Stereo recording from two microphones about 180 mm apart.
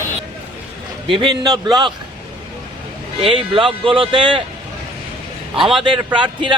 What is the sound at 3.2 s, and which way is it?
A man's voice, 30° right (ahead or behind).